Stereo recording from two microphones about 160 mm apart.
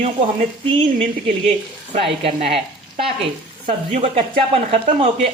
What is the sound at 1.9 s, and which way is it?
Speech, 40° right (ahead or behind).